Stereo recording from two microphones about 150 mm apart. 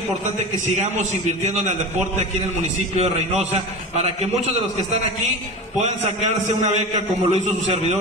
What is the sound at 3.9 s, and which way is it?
A man's voice, 45° right (ahead or behind).